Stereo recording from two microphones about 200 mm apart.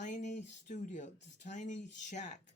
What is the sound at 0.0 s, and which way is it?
Speech, 40° left (ahead or behind).